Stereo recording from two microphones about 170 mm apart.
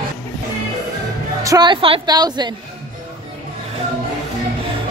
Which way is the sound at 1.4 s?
20° right (ahead or behind).